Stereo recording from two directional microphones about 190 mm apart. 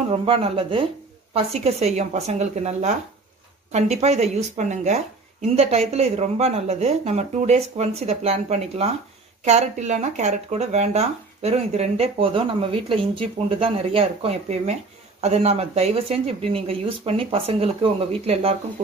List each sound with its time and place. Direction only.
0.1 s speech: 30° right (ahead or behind)